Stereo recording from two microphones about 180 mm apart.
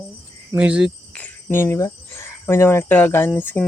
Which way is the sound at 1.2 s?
10° left (ahead or behind).